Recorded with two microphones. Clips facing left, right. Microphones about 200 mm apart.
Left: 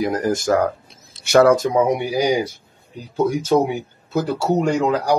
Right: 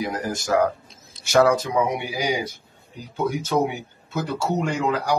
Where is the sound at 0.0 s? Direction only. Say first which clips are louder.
Left 7 dB; 45° left (ahead or behind).